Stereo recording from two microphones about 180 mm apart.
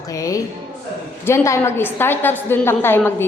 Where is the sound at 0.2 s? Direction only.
20° left (ahead or behind).